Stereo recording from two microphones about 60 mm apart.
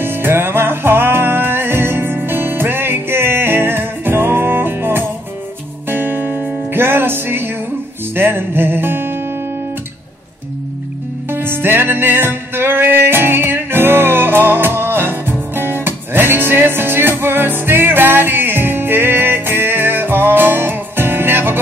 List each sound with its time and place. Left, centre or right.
0.0 s music: right
11.2 s music: right